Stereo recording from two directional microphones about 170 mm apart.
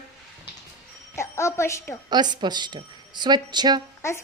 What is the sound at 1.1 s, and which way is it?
Speech, 15° left (ahead or behind).